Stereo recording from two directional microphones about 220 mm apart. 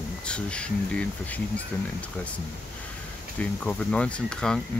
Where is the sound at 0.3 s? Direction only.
5° left (ahead or behind).